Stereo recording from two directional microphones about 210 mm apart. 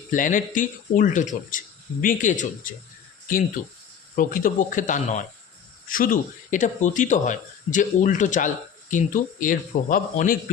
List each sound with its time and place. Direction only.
0.1 s a man's voice: 40° left (ahead or behind)